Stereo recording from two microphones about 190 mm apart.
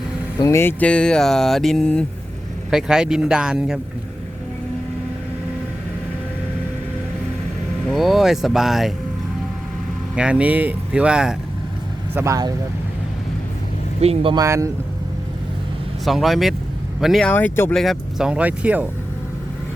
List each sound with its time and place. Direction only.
0.3 s speech: 15° left (ahead or behind); by 3.8 s 5° right (ahead or behind)
7.9 s speech: centre (ahead or behind)
10.2 s speech: 5° right (ahead or behind)
12.1 s speech: 15° right (ahead or behind)
14.0 s speech: 30° right (ahead or behind)
14.4 s speech: 15° right (ahead or behind)
16.0 s speech: centre (ahead or behind)